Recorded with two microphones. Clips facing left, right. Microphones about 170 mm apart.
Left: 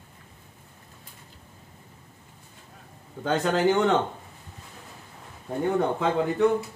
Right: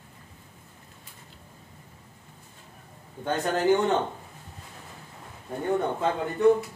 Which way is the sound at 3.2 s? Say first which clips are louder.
Left 1 dB; 90° left.